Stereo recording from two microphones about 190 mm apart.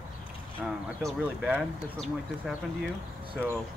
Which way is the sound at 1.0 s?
5° right (ahead or behind).